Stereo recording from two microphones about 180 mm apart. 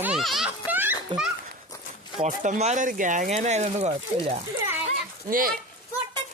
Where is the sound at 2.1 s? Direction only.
45° right (ahead or behind).